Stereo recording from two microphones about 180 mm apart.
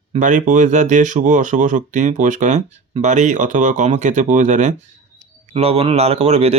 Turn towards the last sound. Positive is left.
turn(degrees=-35)  # may be behind; listen again after turning